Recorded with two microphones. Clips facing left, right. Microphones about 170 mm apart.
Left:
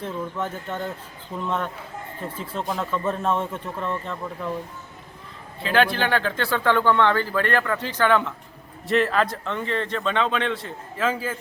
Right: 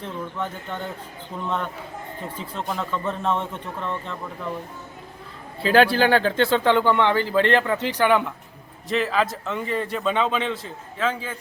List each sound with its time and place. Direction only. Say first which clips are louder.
0.0 s a man's voice: left 1 dB; 5° left (ahead or behind)
5.6 s speech: right 4 dB; 35° right (ahead or behind); by 8.3 s 15° right (ahead or behind)
8.9 s a man's voice: left 2 dB; centre (ahead or behind)